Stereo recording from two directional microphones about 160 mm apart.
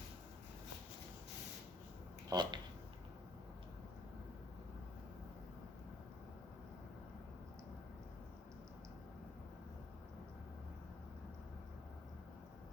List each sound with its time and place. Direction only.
2.3 s speech: 25° right (ahead or behind)